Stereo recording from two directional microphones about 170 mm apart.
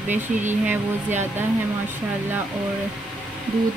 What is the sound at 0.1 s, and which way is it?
Speech, 45° right (ahead or behind).